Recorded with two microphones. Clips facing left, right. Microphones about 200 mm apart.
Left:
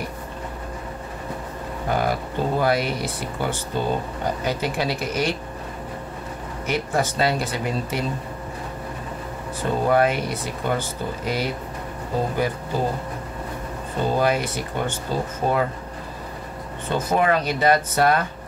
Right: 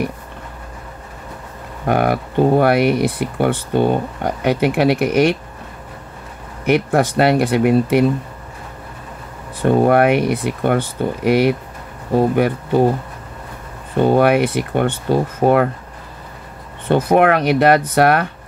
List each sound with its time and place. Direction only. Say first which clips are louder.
1.9 s speech: right 7 dB; 65° right (ahead or behind)
6.6 s speech: right 8 dB; 60° right (ahead or behind)
9.7 s speech: right 7 dB; 65° right (ahead or behind)
14.0 s speech: right 8 dB; 65° right (ahead or behind)
16.9 s speech: right 7 dB; 65° right (ahead or behind)